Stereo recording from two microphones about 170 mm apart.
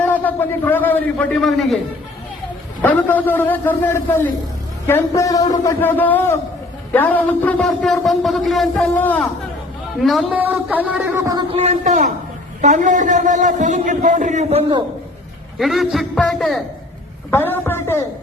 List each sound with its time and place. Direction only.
0.1 s a man's voice: 10° left (ahead or behind)
2.8 s a man's voice: 10° left (ahead or behind)
10.0 s a man's voice: centre (ahead or behind)
11.2 s a man's voice: 20° right (ahead or behind)
11.5 s a man's voice: 35° right (ahead or behind)
15.5 s a man's voice: centre (ahead or behind)
17.3 s a man's voice: 10° left (ahead or behind)